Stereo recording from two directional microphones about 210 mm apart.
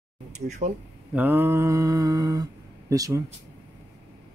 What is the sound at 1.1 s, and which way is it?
Mantra, 10° right (ahead or behind).